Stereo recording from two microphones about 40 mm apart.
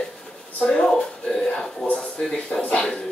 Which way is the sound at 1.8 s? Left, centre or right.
Centre.